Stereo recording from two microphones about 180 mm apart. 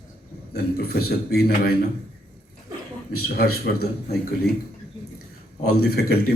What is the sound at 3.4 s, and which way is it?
Speech, 60° left (ahead or behind).